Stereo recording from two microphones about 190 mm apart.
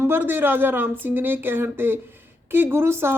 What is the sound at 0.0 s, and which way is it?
A woman's voice, 10° right (ahead or behind).